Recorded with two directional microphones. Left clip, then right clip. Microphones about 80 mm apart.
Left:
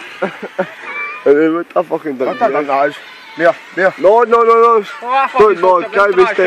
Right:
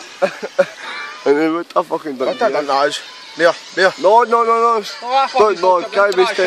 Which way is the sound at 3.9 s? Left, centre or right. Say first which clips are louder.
Left 4 dB; centre.